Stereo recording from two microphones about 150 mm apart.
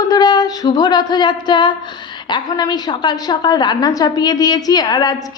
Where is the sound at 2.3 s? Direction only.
30° left (ahead or behind).